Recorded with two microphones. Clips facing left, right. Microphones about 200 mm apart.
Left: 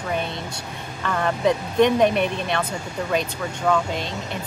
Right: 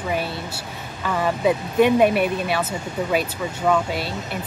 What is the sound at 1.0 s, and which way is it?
Speech, 5° right (ahead or behind).